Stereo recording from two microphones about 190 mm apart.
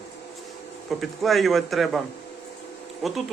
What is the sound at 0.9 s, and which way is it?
A man's voice, centre (ahead or behind).